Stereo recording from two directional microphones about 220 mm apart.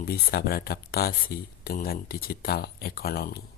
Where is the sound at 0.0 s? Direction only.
45° left (ahead or behind).